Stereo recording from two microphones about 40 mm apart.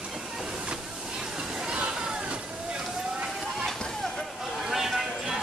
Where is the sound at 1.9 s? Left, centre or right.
Right.